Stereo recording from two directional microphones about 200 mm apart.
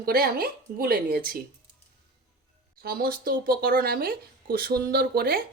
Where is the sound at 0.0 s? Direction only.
50° right (ahead or behind).